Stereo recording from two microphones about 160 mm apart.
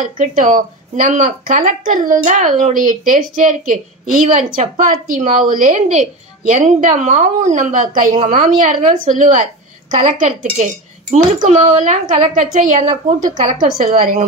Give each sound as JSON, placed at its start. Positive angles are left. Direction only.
{"t": 0.0, "sound": "a woman's voice", "side_deg": -55}